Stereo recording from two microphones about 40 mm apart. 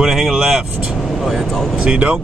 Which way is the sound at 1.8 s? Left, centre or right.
Right.